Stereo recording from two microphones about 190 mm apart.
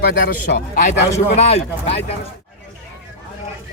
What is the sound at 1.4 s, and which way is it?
Speech, 35° left (ahead or behind).